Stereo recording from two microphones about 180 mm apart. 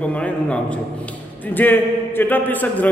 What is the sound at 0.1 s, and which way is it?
Speech, 5° left (ahead or behind).